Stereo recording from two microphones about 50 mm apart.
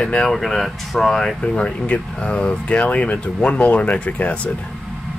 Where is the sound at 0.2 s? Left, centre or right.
Centre.